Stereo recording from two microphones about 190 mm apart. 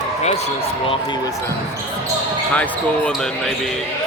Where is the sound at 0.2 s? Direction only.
35° left (ahead or behind).